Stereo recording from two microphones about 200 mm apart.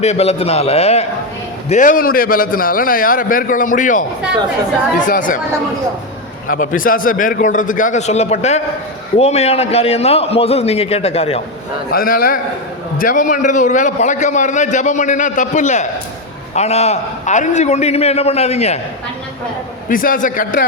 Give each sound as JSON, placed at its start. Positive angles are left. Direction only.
{"t": 0.0, "sound": "a man's voice", "side_deg": 30}
{"t": 6.5, "sound": "a man's voice", "side_deg": 40}
{"t": 11.9, "sound": "a man's voice", "side_deg": 45}
{"t": 19.9, "sound": "a man's voice", "side_deg": 45}